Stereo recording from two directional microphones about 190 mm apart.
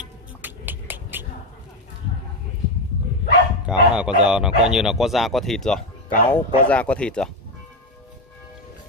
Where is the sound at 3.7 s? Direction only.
5° right (ahead or behind).